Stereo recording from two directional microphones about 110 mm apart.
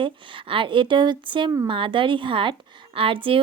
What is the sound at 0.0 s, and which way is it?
A woman's voice, 55° right (ahead or behind).